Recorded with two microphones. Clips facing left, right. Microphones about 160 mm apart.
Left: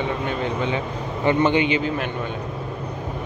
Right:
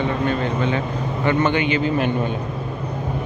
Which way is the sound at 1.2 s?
30° left (ahead or behind).